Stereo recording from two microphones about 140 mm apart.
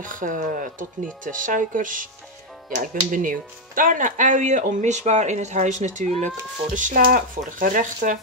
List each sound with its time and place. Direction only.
0.0 s speech: 75° right (ahead or behind); by 6.3 s 55° right (ahead or behind)
6.7 s speech: 65° right (ahead or behind)